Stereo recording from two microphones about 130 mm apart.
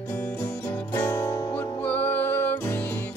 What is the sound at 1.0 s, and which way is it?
Music, 15° left (ahead or behind).